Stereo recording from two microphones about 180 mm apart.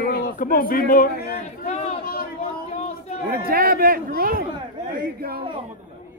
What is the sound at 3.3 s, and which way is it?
Speech, 55° right (ahead or behind).